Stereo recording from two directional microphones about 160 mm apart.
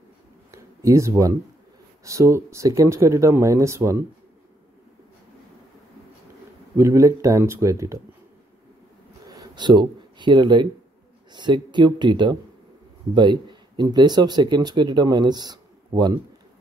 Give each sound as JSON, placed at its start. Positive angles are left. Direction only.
{"t": 0.5, "sound": "a sound", "side_deg": -20}
{"t": 2.0, "sound": "speech", "side_deg": -20}
{"t": 6.8, "sound": "speech", "side_deg": -20}
{"t": 9.3, "sound": "speech", "side_deg": -25}